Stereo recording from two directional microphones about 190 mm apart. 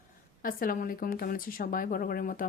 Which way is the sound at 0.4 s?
50° left (ahead or behind).